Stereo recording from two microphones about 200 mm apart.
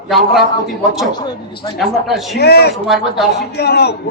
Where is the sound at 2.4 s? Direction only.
55° left (ahead or behind).